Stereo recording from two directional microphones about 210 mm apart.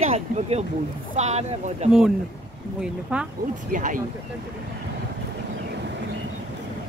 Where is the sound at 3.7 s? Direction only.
40° right (ahead or behind).